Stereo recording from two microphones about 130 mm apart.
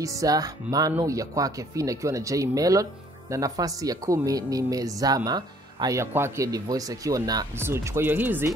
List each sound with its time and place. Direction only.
0.0 s speech: 25° right (ahead or behind)